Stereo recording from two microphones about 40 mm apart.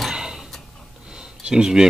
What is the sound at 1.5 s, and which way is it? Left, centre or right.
Speech, centre.